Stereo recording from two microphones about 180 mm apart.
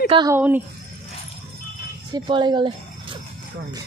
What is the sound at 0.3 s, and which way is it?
Speech, 10° right (ahead or behind).